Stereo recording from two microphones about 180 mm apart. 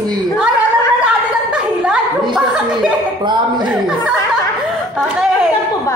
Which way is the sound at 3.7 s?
5° right (ahead or behind).